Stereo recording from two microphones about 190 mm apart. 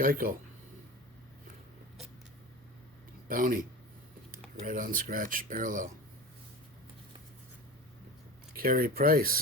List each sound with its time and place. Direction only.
0.0 s speech: 50° right (ahead or behind)
3.2 s speech: 45° right (ahead or behind)
8.5 s speech: 50° right (ahead or behind)